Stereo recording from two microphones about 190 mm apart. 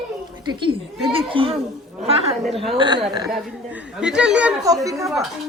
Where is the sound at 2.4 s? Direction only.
Centre (ahead or behind).